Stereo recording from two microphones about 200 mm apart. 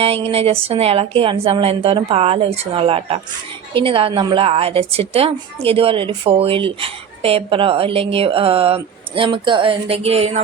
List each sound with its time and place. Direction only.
0.0 s a woman's voice: 30° right (ahead or behind)